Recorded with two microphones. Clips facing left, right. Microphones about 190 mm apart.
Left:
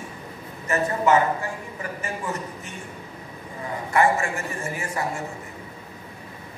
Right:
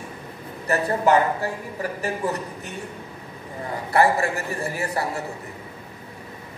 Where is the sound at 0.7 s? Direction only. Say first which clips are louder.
Right 1 dB; 35° right (ahead or behind).